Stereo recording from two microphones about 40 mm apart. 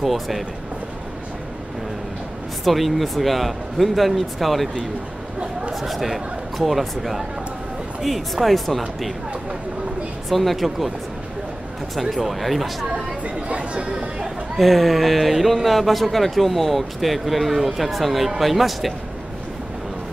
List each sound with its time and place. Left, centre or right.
0.0 s speech: centre
2.6 s speech: centre
5.8 s speech: centre
10.3 s speech: centre
11.9 s speech: centre
13.2 s chatter: right
13.8 s chatter: centre
14.6 s speech: centre